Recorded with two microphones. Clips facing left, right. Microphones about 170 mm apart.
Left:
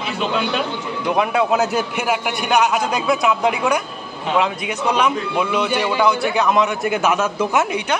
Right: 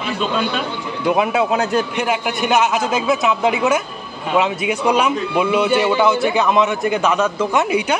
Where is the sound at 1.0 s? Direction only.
5° right (ahead or behind).